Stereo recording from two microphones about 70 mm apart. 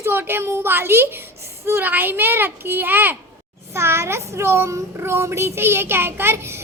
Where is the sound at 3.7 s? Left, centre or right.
Right.